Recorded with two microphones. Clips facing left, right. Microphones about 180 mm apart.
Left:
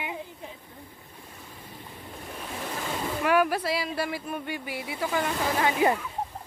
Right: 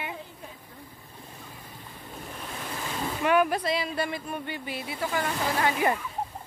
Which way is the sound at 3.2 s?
5° left (ahead or behind).